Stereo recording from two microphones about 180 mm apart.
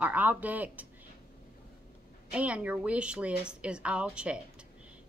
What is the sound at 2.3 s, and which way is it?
A woman's voice, 5° right (ahead or behind).